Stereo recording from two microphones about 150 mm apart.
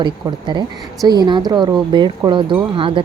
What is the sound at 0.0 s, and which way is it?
Speech, 30° right (ahead or behind).